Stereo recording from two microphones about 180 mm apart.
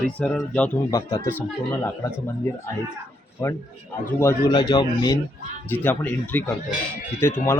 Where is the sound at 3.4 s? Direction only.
15° left (ahead or behind).